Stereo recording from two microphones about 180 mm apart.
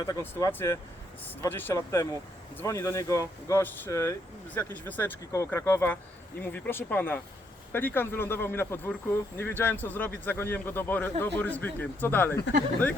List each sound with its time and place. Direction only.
0.0 s speech: 15° left (ahead or behind)